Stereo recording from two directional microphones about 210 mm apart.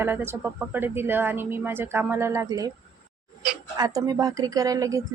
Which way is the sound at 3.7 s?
20° right (ahead or behind).